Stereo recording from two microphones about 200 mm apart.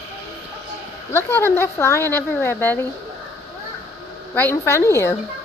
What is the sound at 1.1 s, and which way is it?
A woman's voice, 10° left (ahead or behind).